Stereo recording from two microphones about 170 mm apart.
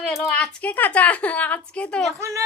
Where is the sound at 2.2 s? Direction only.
15° right (ahead or behind).